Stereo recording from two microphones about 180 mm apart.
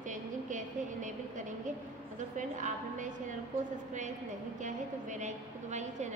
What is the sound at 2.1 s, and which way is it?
A woman's voice, 45° right (ahead or behind).